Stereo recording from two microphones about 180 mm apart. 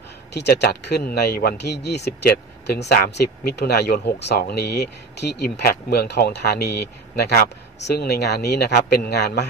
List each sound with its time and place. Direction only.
0.3 s speech: 65° left (ahead or behind)